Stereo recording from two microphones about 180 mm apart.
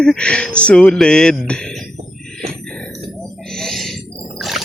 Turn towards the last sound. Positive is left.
turn(degrees=0)  # may be behind; listen again after turning